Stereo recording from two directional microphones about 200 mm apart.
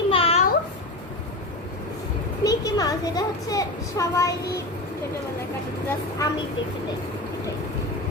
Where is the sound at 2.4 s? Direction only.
20° left (ahead or behind).